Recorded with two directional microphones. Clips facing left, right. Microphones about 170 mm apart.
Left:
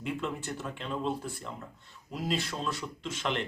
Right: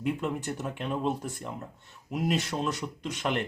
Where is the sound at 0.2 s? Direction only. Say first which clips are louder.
Right 3 dB; 15° right (ahead or behind).